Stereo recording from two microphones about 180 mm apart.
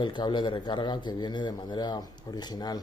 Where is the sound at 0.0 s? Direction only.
25° left (ahead or behind).